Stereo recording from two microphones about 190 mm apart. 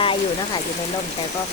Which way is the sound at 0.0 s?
25° left (ahead or behind).